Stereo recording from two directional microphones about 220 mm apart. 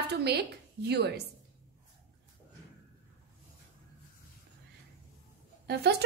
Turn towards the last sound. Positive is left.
turn(degrees=-50)  # may be behind; listen again after turning